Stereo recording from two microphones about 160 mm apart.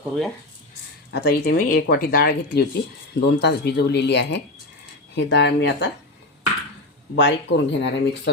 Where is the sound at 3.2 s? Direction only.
90° left.